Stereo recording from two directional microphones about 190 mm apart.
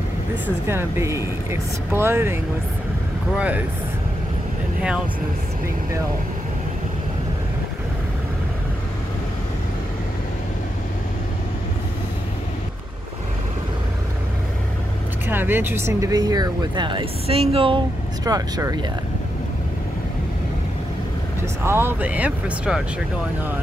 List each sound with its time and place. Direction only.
0.7 s speech: 15° right (ahead or behind)
3.3 s speech: 5° right (ahead or behind)
15.2 s speech: 10° right (ahead or behind); by 17.7 s 30° right (ahead or behind)
18.2 s speech: 20° right (ahead or behind)
21.6 s speech: 10° right (ahead or behind)